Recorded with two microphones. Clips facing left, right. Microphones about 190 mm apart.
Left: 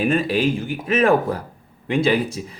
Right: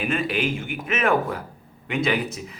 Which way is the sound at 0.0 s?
35° left (ahead or behind).